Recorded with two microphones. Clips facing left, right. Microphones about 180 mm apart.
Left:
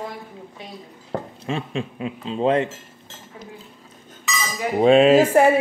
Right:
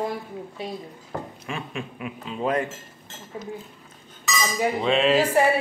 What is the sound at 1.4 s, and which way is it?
Speech, 30° left (ahead or behind).